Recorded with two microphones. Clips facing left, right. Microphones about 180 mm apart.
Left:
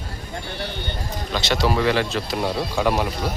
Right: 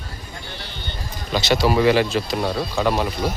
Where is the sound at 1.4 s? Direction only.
5° right (ahead or behind).